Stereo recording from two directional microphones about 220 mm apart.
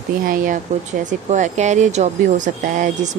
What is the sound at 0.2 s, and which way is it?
A woman's voice, 40° right (ahead or behind).